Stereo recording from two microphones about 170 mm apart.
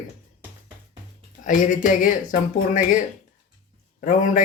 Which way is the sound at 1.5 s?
50° left (ahead or behind).